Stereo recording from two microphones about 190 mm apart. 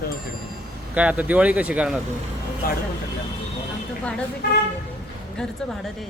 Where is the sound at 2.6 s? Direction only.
50° left (ahead or behind).